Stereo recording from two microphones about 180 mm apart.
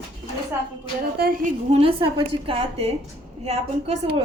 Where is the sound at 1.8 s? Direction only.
30° right (ahead or behind).